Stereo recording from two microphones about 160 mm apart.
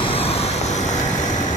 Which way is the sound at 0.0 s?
35° left (ahead or behind).